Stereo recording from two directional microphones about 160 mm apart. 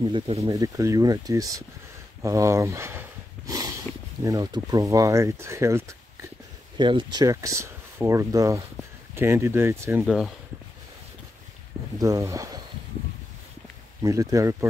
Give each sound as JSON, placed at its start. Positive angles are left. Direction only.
{"t": 0.0, "sound": "speech", "side_deg": -35}
{"t": 0.5, "sound": "speech", "side_deg": -20}
{"t": 6.8, "sound": "speech", "side_deg": -30}
{"t": 10.0, "sound": "speech", "side_deg": -5}
{"t": 12.0, "sound": "speech", "side_deg": -20}
{"t": 14.0, "sound": "speech", "side_deg": -20}